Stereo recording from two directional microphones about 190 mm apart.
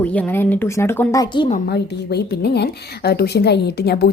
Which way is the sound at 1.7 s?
60° left (ahead or behind).